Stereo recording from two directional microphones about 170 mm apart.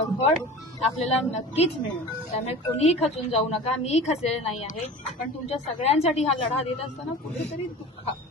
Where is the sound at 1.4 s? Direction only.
35° left (ahead or behind).